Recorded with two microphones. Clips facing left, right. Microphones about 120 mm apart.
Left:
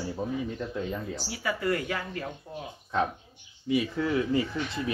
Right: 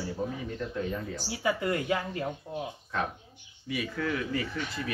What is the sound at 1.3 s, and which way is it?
Speech, 20° right (ahead or behind).